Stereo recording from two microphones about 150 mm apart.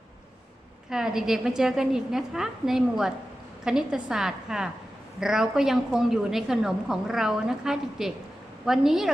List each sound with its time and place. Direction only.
0.9 s a woman's voice: 5° right (ahead or behind)